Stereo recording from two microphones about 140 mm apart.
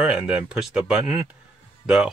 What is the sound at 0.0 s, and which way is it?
Speech, 10° right (ahead or behind).